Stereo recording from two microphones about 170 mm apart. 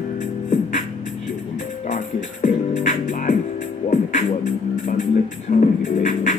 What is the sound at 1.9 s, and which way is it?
Music, 45° left (ahead or behind).